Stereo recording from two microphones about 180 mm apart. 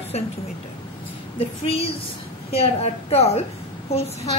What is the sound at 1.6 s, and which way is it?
A woman's voice, 30° left (ahead or behind).